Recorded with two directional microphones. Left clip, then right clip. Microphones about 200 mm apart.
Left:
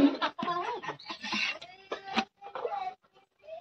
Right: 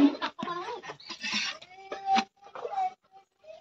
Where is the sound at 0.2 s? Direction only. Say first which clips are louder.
Left 3 dB; 55° left (ahead or behind).